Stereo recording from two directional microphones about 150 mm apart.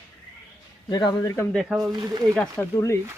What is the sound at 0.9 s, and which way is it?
Speech, 30° left (ahead or behind).